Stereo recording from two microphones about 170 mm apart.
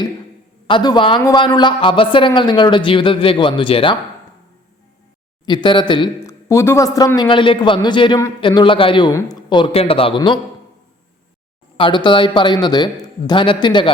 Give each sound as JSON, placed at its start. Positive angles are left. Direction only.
{"t": 0.7, "sound": "speech", "side_deg": 25}
{"t": 5.5, "sound": "speech", "side_deg": 25}
{"t": 6.2, "sound": "speech", "side_deg": 15}
{"t": 11.8, "sound": "speech", "side_deg": 25}